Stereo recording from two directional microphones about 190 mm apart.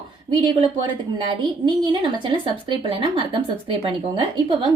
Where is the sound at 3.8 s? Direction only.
30° right (ahead or behind).